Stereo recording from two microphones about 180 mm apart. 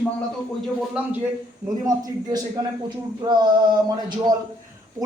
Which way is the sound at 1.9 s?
20° right (ahead or behind).